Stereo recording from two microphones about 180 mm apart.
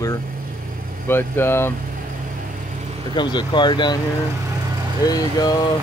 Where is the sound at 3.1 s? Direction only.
25° left (ahead or behind).